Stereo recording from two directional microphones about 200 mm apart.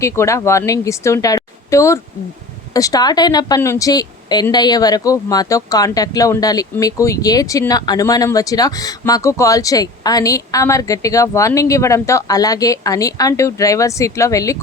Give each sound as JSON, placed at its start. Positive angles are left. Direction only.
{"t": 0.0, "sound": "speech", "side_deg": 15}